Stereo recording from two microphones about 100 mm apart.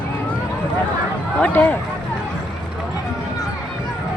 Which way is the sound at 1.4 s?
20° left (ahead or behind).